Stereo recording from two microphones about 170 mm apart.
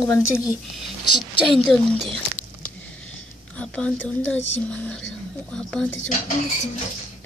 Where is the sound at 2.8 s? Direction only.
5° left (ahead or behind).